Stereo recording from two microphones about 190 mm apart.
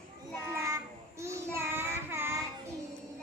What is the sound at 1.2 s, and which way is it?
Child singing, 15° right (ahead or behind).